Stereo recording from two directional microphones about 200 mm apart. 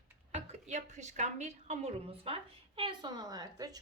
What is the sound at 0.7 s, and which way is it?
A woman's voice, 35° right (ahead or behind).